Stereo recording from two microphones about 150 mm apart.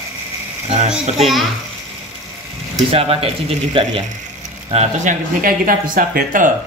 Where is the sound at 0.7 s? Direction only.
50° right (ahead or behind).